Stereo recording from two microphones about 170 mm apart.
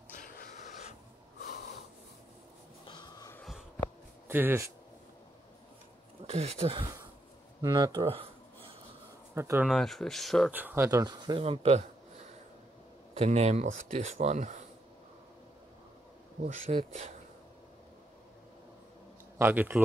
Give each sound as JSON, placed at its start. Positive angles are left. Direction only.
{"t": 0.2, "sound": "a sound", "side_deg": 50}
{"t": 2.9, "sound": "wheeze", "side_deg": 25}
{"t": 4.3, "sound": "speech", "side_deg": -10}
{"t": 6.2, "sound": "speech", "side_deg": -40}
{"t": 7.6, "sound": "speech", "side_deg": -20}
{"t": 9.3, "sound": "speech", "side_deg": -15}
{"t": 9.7, "sound": "speech", "side_deg": 0}
{"t": 10.5, "sound": "speech", "side_deg": -10}
{"t": 11.4, "sound": "speech", "side_deg": -35}
{"t": 13.2, "sound": "speech", "side_deg": -40}
{"t": 16.7, "sound": "speech", "side_deg": -40}
{"t": 19.3, "sound": "speech", "side_deg": -10}